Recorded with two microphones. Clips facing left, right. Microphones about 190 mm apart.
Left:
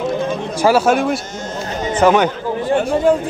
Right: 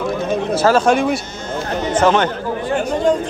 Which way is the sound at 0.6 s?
10° left (ahead or behind).